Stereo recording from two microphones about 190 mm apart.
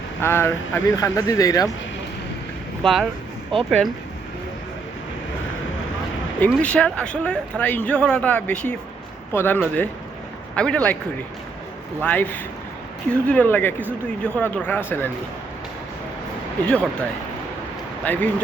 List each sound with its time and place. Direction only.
0.2 s speech: 10° left (ahead or behind)
2.8 s a man's voice: centre (ahead or behind)
6.4 s a man's voice: 5° left (ahead or behind)
11.9 s speech: 10° left (ahead or behind)
16.6 s a man's voice: 5° left (ahead or behind)